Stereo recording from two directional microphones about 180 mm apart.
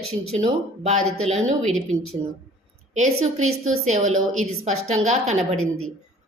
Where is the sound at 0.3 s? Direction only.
40° right (ahead or behind).